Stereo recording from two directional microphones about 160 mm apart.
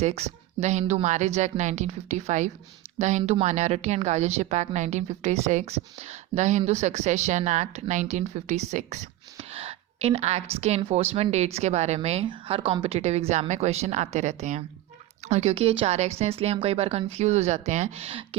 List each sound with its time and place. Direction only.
0.0 s a woman's voice: 40° right (ahead or behind)